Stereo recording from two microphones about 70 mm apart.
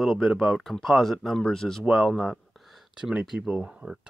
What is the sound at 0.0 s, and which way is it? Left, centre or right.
Speech, centre.